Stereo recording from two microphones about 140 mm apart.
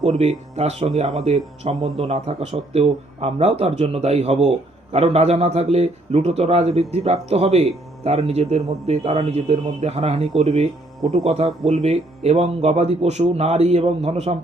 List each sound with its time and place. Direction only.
0.1 s a man's voice: 55° right (ahead or behind)